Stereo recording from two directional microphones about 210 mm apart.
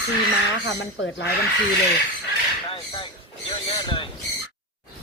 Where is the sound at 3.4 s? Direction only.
25° left (ahead or behind).